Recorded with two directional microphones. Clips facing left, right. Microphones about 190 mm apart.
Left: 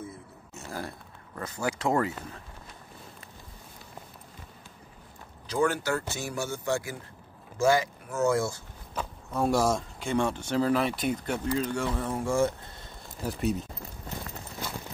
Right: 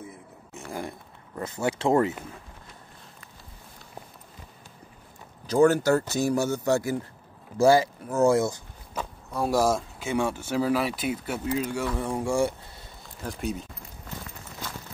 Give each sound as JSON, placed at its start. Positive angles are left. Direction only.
{"t": 0.7, "sound": "speech", "side_deg": -20}
{"t": 5.5, "sound": "speech", "side_deg": -40}
{"t": 8.9, "sound": "speech", "side_deg": -5}
{"t": 13.2, "sound": "speech", "side_deg": 0}